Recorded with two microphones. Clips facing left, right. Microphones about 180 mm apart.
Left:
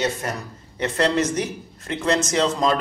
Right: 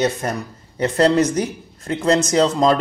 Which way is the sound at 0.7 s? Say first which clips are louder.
Right 5 dB; 35° right (ahead or behind).